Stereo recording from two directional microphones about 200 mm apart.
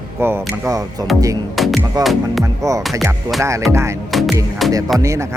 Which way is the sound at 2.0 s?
Centre (ahead or behind).